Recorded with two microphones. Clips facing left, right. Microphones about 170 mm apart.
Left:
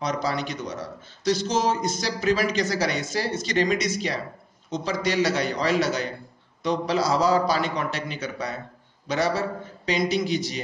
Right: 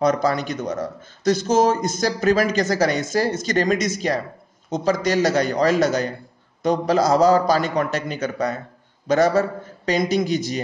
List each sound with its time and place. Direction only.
0.0 s speech: 45° right (ahead or behind)